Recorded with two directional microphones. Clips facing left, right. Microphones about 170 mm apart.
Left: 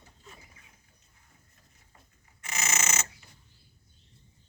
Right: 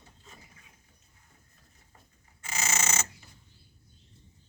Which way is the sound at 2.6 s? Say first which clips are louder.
Right 1 dB; 30° right (ahead or behind).